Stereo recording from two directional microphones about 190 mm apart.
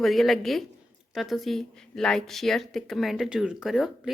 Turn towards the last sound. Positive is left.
turn(degrees=0)  # may be behind; listen again after turning